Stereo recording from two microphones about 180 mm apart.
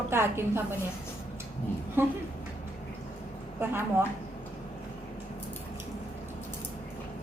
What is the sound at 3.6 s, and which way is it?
Speech, 10° right (ahead or behind).